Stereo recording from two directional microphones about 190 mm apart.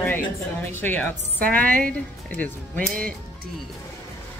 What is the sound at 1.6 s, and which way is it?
Speech, 45° right (ahead or behind).